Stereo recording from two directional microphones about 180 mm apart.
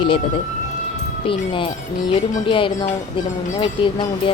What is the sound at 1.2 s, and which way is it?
Speech, 30° left (ahead or behind).